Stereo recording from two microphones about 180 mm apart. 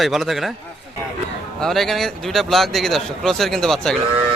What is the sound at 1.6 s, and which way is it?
A man's voice, centre (ahead or behind).